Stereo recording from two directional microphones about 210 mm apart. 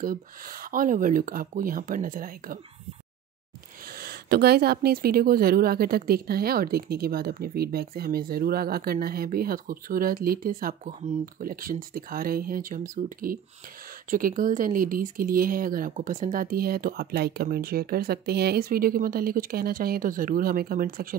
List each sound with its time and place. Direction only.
0.0 s speech: 40° right (ahead or behind)
4.0 s speech: 50° right (ahead or behind)